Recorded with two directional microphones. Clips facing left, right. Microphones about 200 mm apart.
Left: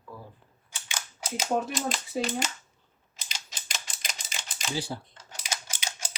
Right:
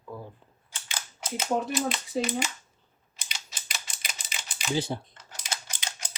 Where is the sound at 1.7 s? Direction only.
Centre (ahead or behind).